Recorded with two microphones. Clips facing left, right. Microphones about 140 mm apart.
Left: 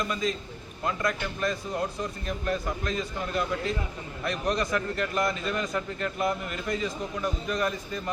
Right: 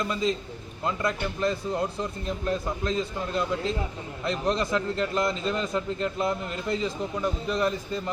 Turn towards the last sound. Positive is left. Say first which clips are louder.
# right 3 dB
turn(degrees=-25)  # may be behind; listen again after turning